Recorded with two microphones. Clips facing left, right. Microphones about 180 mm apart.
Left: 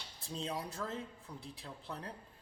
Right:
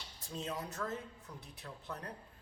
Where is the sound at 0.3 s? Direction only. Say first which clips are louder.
Even; 30° left (ahead or behind).